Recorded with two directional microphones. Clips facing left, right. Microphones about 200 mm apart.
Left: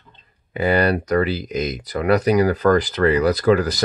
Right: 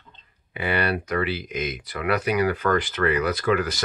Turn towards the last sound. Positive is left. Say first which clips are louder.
# left 6 dB
turn(degrees=35)  # may be behind; listen again after turning